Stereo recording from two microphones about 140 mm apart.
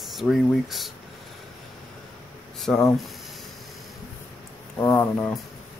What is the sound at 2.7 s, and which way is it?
Speech, 10° left (ahead or behind).